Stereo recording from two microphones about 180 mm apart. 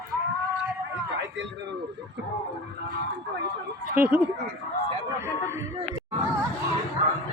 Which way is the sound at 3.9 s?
10° right (ahead or behind).